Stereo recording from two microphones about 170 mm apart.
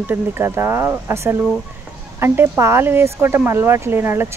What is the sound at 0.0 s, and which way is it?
Speech, 15° right (ahead or behind).